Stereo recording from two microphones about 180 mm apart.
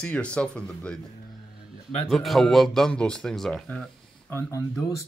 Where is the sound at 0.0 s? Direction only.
5° left (ahead or behind).